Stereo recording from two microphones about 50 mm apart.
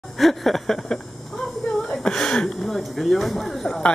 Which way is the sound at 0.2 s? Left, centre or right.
Centre.